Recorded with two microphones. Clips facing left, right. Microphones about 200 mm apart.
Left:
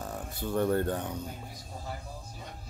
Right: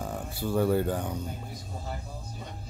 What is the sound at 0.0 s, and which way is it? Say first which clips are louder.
Speech: right 3 dB; 5° right (ahead or behind).